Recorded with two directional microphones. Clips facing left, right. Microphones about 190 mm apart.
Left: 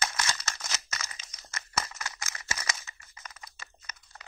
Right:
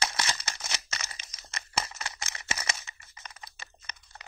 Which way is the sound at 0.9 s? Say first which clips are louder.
Even; 30° right (ahead or behind).